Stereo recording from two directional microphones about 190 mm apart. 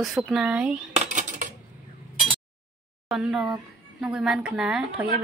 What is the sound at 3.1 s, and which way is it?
A woman's voice, centre (ahead or behind).